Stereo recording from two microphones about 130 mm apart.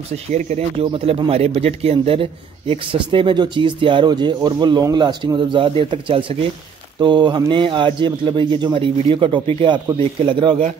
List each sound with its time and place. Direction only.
0.3 s speech: 60° right (ahead or behind); by 10.6 s 40° right (ahead or behind)